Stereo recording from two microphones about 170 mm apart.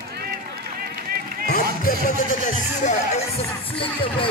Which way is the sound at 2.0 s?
45° left (ahead or behind).